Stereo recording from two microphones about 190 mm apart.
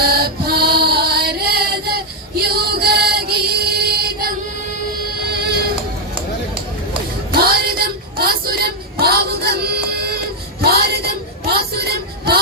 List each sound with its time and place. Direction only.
0.0 s music: 55° right (ahead or behind)
5.3 s music: 55° right (ahead or behind)
7.3 s a sound: 55° right (ahead or behind)